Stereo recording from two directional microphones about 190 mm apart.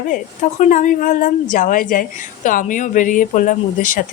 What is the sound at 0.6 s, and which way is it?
Speech, 40° left (ahead or behind).